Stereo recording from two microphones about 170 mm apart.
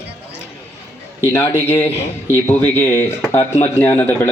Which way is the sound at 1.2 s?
15° left (ahead or behind).